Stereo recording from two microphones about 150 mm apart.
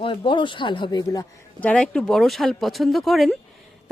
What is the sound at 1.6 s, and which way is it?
Speech, 10° left (ahead or behind).